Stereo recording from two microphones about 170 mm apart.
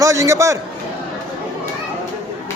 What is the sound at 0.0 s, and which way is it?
Speech, 15° right (ahead or behind).